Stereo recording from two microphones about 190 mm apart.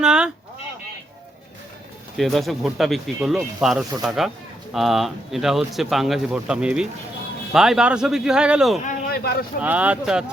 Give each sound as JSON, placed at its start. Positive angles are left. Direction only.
{"t": 0.0, "sound": "speech", "side_deg": -5}
{"t": 2.1, "sound": "speech", "side_deg": 0}
{"t": 8.8, "sound": "a sound", "side_deg": 55}
{"t": 9.6, "sound": "speech", "side_deg": -5}